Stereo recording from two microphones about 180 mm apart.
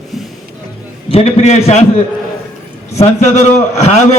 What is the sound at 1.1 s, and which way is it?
Speech, 35° left (ahead or behind).